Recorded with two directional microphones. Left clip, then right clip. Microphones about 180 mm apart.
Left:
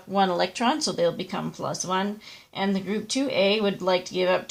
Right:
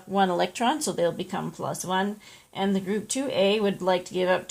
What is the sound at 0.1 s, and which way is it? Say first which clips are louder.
Speech: left 1 dB; 25° right (ahead or behind).